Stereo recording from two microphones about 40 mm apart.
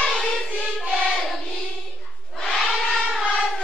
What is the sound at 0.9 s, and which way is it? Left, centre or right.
Child singing, left.